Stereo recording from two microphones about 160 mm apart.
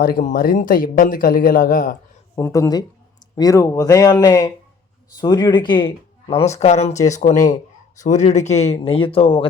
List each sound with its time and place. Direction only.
0.0 s speech: 60° left (ahead or behind)
2.3 s speech: 20° left (ahead or behind); by 9.5 s 35° left (ahead or behind)